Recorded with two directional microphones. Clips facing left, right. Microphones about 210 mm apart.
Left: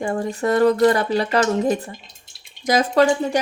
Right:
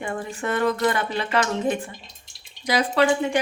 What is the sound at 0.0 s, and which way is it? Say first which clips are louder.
A woman's voice: left 7 dB; 40° left (ahead or behind).